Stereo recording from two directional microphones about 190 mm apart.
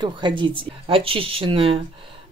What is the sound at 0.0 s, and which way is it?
Speech, 25° right (ahead or behind).